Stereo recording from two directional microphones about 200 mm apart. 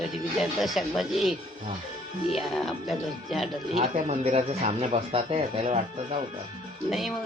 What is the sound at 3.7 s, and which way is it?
Speech, 30° right (ahead or behind).